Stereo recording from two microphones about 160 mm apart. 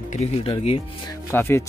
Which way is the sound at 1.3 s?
15° left (ahead or behind).